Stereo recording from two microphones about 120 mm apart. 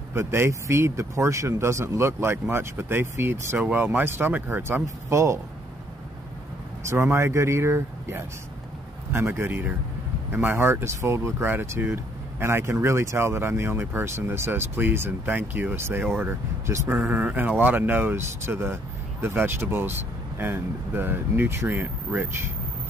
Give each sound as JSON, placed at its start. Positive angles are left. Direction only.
{"t": 0.1, "sound": "speech", "side_deg": -20}
{"t": 6.8, "sound": "speech", "side_deg": -25}